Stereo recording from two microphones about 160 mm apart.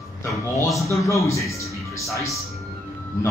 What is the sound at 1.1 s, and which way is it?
Speech, 20° left (ahead or behind).